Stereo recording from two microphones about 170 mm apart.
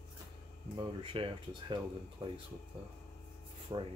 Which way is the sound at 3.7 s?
25° right (ahead or behind).